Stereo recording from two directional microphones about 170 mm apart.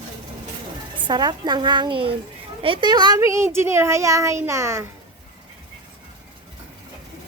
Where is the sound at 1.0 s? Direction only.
25° right (ahead or behind).